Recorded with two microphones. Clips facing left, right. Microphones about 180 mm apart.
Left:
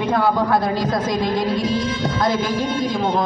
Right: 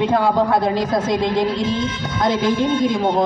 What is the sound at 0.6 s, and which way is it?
A woman's voice, 25° right (ahead or behind).